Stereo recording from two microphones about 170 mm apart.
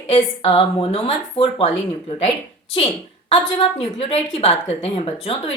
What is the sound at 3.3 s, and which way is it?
A woman's voice, 35° left (ahead or behind).